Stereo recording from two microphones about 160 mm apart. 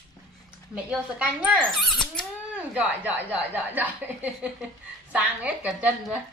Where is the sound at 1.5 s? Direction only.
5° left (ahead or behind).